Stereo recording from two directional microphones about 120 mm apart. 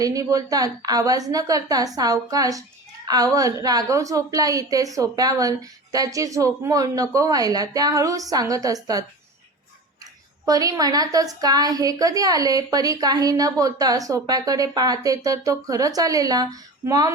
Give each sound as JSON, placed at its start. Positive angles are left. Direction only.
{"t": 0.0, "sound": "a woman's voice", "side_deg": -30}
{"t": 10.4, "sound": "a woman's voice", "side_deg": -30}